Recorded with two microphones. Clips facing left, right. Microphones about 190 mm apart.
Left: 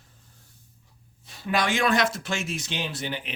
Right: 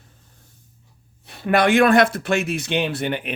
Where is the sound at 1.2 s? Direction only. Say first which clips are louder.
Right 8 dB; 60° right (ahead or behind).